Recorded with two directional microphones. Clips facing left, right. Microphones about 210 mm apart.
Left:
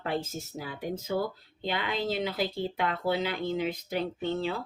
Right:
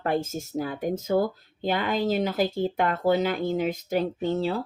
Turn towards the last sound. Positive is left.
turn(degrees=-40)  # may be behind; listen again after turning